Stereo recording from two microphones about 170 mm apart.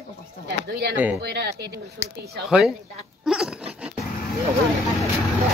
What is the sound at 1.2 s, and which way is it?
Speech, 75° right (ahead or behind).